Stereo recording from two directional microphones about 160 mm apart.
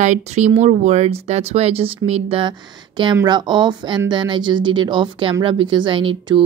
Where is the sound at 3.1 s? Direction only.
25° right (ahead or behind).